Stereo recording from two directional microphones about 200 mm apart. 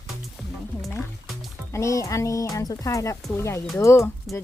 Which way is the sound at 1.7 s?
15° left (ahead or behind).